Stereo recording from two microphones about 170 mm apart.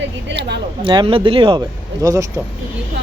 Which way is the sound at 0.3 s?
85° right.